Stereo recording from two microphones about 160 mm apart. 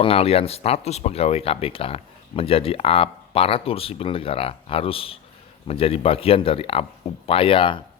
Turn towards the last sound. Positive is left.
turn(degrees=35)  # may be behind; listen again after turning